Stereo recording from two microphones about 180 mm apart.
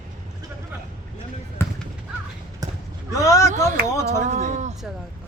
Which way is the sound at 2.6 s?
20° right (ahead or behind).